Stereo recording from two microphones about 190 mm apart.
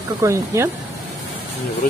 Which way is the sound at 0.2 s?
15° right (ahead or behind).